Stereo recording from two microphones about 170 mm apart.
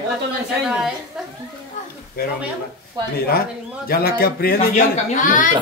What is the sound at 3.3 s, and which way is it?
A man's voice, 60° left (ahead or behind).